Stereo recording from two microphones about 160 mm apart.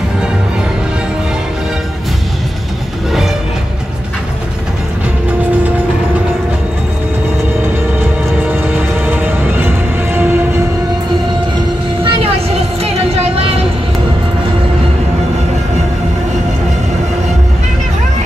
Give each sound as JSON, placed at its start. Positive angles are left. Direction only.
{"t": 8.4, "sound": "music", "side_deg": -10}
{"t": 12.0, "sound": "vehicle", "side_deg": -35}